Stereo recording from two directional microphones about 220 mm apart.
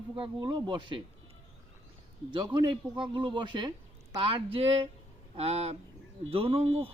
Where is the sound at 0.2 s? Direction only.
20° right (ahead or behind).